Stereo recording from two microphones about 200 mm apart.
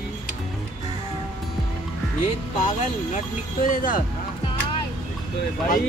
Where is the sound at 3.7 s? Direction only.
45° left (ahead or behind).